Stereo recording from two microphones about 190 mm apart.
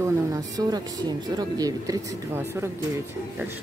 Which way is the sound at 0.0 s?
20° right (ahead or behind).